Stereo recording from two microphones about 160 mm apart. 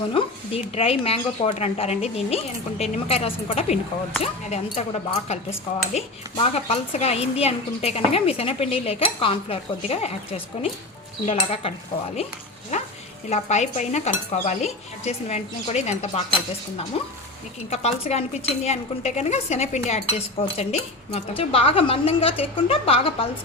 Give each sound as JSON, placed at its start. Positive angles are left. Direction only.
{"t": 0.1, "sound": "speech", "side_deg": 35}
{"t": 4.2, "sound": "stir", "side_deg": 45}
{"t": 4.7, "sound": "speech", "side_deg": 40}
{"t": 12.7, "sound": "frying", "side_deg": 45}
{"t": 13.3, "sound": "stir", "side_deg": 45}
{"t": 16.9, "sound": "speech", "side_deg": 40}